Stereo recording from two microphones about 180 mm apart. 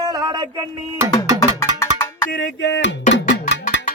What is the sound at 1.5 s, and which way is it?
Music, 15° left (ahead or behind).